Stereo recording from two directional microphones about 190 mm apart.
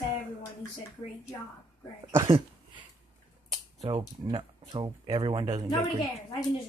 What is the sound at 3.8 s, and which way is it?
Speech, 25° right (ahead or behind).